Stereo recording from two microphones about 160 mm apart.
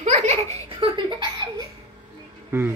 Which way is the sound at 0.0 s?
40° right (ahead or behind).